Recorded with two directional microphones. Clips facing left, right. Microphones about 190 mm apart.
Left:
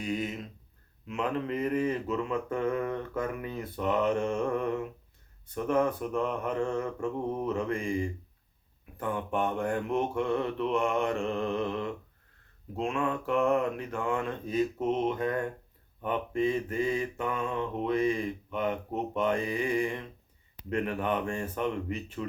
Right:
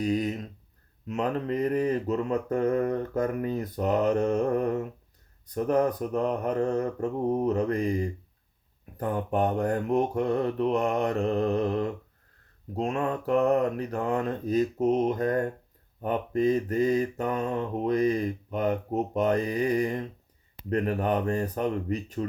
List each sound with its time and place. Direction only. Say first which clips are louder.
0.0 s speech: right 6 dB; 35° right (ahead or behind)
1.0 s mantra: right 3 dB; 40° right (ahead or behind)